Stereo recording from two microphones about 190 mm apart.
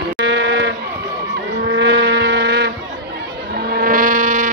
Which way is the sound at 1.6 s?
65° right (ahead or behind).